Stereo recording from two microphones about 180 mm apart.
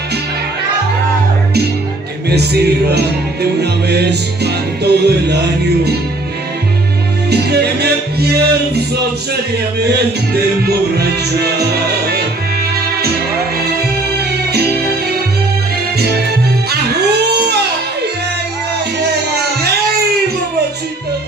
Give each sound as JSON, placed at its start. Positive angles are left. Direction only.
{"t": 2.2, "sound": "music", "side_deg": -65}
{"t": 7.2, "sound": "music", "side_deg": -65}
{"t": 11.0, "sound": "music", "side_deg": -65}